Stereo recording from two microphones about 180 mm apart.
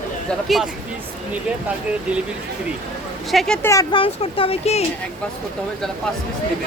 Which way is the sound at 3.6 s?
20° left (ahead or behind).